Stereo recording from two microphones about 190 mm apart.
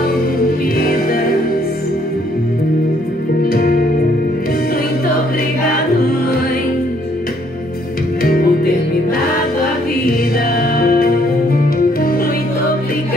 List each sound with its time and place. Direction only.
0.7 s music: 50° left (ahead or behind)
3.5 s music: 50° left (ahead or behind)
8.2 s music: 50° left (ahead or behind)
10.6 s music: 50° left (ahead or behind)